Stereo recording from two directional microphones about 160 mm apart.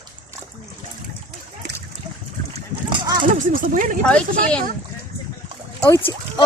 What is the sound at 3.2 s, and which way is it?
Speech, 55° right (ahead or behind).